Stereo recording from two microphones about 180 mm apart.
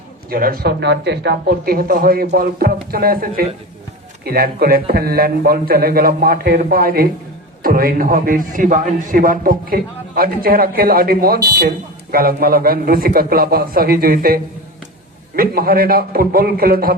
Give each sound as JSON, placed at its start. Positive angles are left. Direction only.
{"t": 0.3, "sound": "a man's voice", "side_deg": -55}